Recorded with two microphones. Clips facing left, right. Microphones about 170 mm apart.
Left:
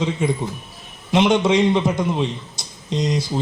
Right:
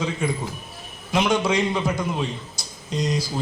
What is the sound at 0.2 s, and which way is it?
A man's voice, 20° left (ahead or behind).